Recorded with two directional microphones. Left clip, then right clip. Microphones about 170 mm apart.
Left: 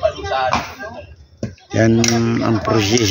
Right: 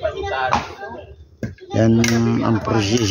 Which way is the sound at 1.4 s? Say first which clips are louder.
Left 2 dB; centre (ahead or behind).